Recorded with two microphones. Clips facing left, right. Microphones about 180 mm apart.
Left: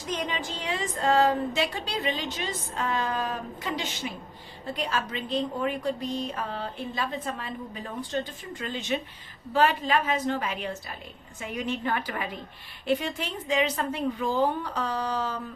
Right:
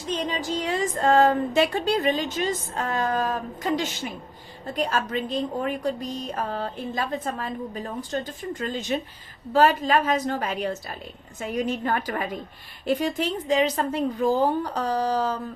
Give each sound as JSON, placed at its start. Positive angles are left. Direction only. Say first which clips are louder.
{"t": 0.1, "sound": "a woman's voice", "louder": "right 4 dB", "side_deg": -35}